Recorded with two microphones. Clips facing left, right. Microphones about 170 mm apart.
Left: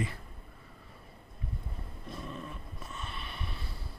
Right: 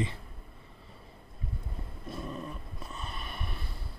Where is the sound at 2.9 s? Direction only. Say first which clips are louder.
Right 2 dB; 40° right (ahead or behind).